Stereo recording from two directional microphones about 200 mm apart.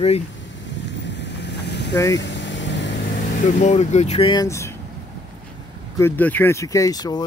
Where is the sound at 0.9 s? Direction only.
60° left (ahead or behind).